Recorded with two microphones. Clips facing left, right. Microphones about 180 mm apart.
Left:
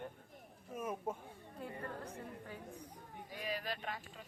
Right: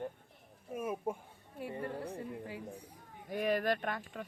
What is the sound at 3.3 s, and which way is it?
Speech, 55° right (ahead or behind).